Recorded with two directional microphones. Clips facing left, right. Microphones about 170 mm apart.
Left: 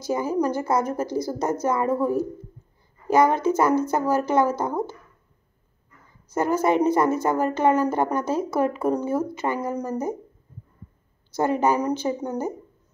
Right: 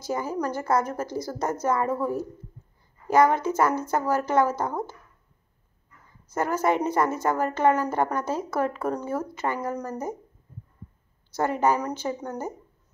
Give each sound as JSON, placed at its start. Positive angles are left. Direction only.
{"t": 0.1, "sound": "a woman's voice", "side_deg": 15}
{"t": 6.3, "sound": "a woman's voice", "side_deg": 20}
{"t": 11.3, "sound": "a woman's voice", "side_deg": 20}